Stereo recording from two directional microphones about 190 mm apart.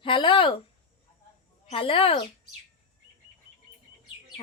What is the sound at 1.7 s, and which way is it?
Speech, 30° left (ahead or behind).